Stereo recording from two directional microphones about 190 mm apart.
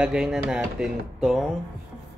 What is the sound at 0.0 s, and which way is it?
Speech, 5° right (ahead or behind).